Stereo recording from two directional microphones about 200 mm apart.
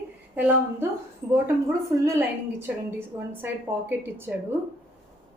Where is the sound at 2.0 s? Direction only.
15° right (ahead or behind).